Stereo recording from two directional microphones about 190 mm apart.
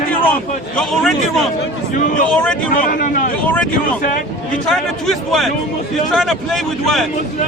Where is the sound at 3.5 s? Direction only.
5° left (ahead or behind).